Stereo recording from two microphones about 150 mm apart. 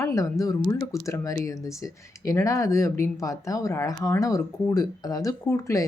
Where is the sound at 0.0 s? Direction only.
20° left (ahead or behind).